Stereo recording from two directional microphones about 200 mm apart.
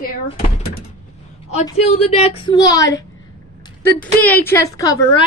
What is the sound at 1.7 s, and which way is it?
A woman's voice, 30° left (ahead or behind).